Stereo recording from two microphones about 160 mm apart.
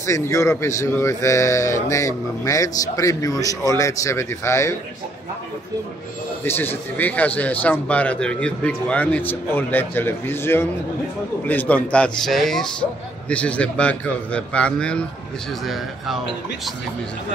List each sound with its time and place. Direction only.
0.0 s a man's voice: 20° left (ahead or behind)
6.4 s speech: 15° left (ahead or behind)